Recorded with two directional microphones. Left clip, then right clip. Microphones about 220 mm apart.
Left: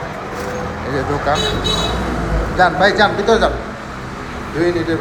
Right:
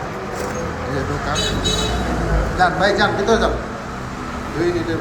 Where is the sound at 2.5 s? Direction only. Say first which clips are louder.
Left 4 dB; 15° right (ahead or behind).